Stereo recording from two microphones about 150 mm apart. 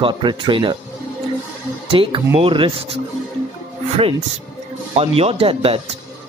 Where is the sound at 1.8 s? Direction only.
35° right (ahead or behind).